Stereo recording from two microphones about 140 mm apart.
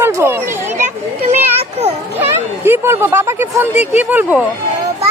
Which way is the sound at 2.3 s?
15° right (ahead or behind).